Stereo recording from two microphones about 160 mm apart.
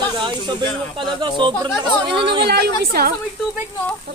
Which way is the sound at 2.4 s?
90° right.